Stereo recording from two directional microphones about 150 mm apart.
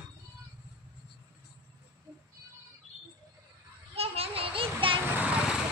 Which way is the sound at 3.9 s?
40° right (ahead or behind).